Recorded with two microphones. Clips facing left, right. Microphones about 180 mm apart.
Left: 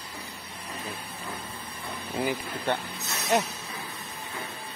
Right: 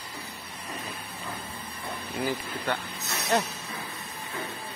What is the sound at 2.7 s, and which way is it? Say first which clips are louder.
Speech: left 2 dB; 25° left (ahead or behind).